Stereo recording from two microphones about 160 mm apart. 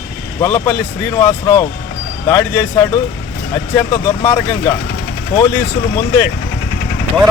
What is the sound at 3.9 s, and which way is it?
Speech, 20° left (ahead or behind).